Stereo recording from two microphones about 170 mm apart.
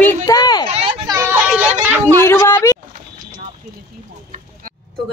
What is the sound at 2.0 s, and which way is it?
Speech, 15° left (ahead or behind).